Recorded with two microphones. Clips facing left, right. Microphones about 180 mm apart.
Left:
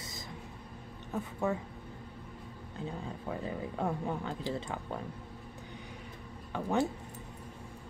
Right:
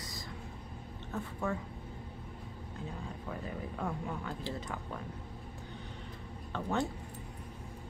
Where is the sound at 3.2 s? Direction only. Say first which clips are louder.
Left 4 dB; 25° left (ahead or behind).